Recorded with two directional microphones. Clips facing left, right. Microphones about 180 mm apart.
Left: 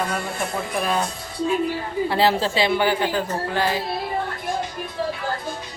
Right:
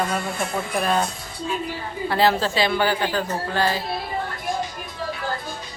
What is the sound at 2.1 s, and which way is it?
A woman's voice, 25° left (ahead or behind).